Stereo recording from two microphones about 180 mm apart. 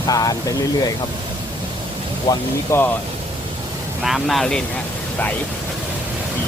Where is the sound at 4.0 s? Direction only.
Centre (ahead or behind).